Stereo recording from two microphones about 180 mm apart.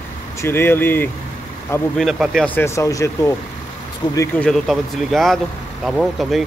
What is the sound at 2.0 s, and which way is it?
Speech, centre (ahead or behind).